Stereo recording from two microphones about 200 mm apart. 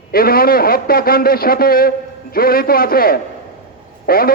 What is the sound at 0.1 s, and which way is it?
A man's voice, 50° left (ahead or behind).